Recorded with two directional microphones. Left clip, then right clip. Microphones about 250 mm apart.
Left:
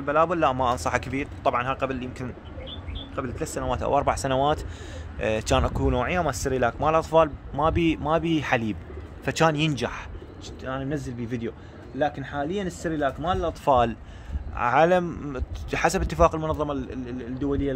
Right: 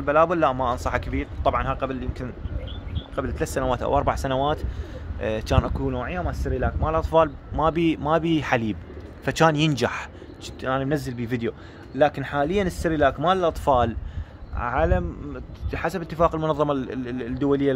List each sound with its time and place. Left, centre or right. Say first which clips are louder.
0.0 s speech: right 2 dB; centre
3.2 s speech: right 4 dB; centre
13.7 s a man's voice: left 4 dB; centre
16.3 s speech: right 3 dB; centre